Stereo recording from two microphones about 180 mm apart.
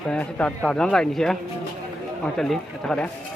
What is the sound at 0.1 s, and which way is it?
Speech, 5° left (ahead or behind).